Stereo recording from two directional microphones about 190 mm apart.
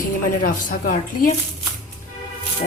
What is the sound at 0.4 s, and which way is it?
Speech, 45° left (ahead or behind).